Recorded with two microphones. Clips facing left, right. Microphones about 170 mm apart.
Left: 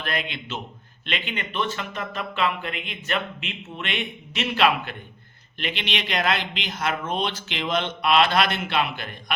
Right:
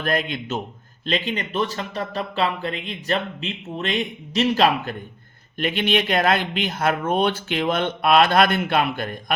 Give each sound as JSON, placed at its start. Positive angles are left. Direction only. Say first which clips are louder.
{"t": 0.0, "sound": "speech", "louder": "right 6 dB", "side_deg": -45}